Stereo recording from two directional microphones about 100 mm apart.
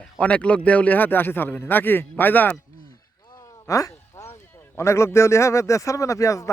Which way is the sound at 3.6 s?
35° left (ahead or behind).